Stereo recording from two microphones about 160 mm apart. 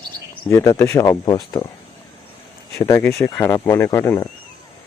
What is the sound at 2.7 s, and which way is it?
Speech, 15° left (ahead or behind).